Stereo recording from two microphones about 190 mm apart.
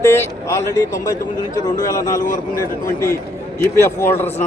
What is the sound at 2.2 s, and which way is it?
Speech, 45° left (ahead or behind).